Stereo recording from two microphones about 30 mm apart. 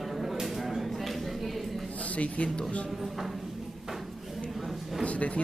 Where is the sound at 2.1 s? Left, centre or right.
Left.